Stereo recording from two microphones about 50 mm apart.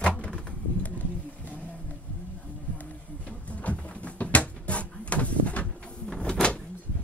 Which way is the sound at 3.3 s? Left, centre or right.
Left.